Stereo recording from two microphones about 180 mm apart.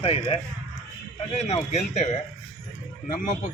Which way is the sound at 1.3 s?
35° left (ahead or behind).